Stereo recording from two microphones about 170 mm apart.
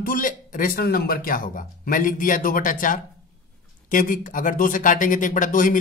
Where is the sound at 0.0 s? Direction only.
55° left (ahead or behind).